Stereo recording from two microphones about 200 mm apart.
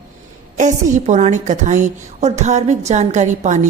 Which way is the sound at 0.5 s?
40° right (ahead or behind).